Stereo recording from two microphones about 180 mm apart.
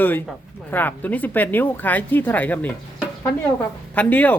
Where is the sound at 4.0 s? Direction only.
10° left (ahead or behind).